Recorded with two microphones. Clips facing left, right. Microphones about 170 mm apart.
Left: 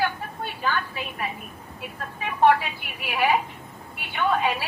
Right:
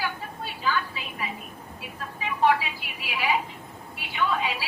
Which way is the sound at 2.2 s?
55° left (ahead or behind).